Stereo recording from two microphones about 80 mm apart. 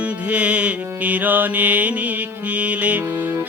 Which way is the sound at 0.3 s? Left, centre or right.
Centre.